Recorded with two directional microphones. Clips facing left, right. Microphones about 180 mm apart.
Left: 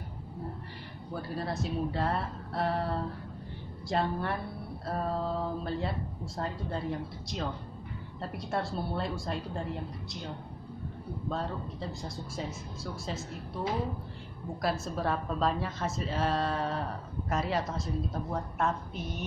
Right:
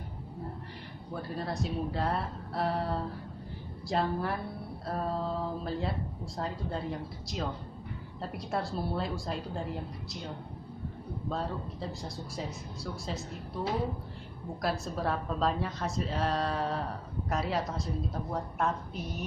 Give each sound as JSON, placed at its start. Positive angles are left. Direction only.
{"t": 1.3, "sound": "speech", "side_deg": 0}
{"t": 11.2, "sound": "speech", "side_deg": 0}
{"t": 14.6, "sound": "speech", "side_deg": 0}